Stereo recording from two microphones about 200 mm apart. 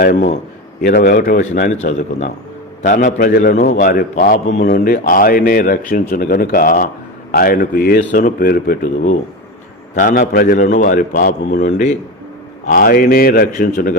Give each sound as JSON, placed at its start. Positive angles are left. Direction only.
{"t": 0.0, "sound": "a man's voice", "side_deg": 50}